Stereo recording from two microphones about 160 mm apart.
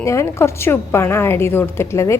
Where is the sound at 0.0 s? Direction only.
20° left (ahead or behind).